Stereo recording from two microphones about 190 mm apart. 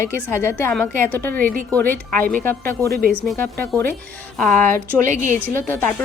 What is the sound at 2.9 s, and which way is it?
Speech, 50° right (ahead or behind).